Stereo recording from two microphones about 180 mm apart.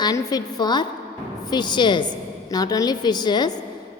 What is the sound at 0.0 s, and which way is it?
A woman's voice, 20° left (ahead or behind).